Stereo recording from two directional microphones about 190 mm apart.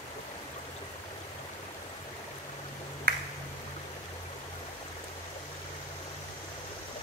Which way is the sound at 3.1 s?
55° right (ahead or behind).